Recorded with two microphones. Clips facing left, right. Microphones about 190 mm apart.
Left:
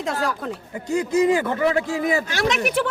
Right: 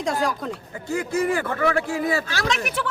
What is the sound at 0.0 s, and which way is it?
Speech, centre (ahead or behind).